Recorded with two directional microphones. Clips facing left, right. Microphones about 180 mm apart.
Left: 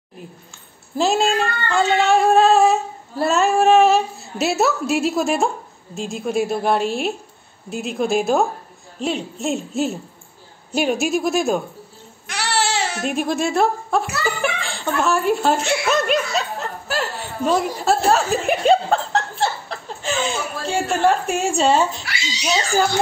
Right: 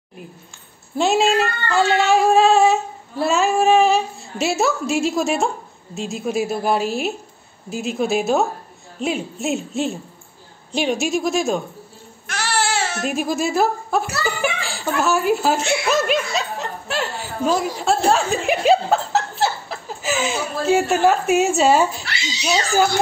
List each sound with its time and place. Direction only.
0.9 s female singing: centre (ahead or behind)
12.3 s babbling: 15° left (ahead or behind)
13.0 s speech: centre (ahead or behind)
22.0 s speech: 10° left (ahead or behind)